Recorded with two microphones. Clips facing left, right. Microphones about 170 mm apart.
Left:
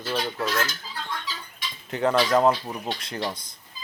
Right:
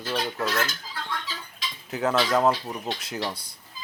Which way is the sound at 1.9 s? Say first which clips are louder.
Left 2 dB; centre (ahead or behind).